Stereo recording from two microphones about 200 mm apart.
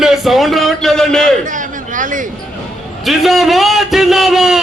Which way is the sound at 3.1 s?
Centre (ahead or behind).